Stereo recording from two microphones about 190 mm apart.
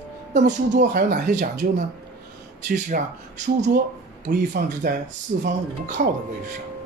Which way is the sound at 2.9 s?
45° right (ahead or behind).